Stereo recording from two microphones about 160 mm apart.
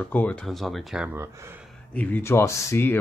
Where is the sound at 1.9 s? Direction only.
10° left (ahead or behind).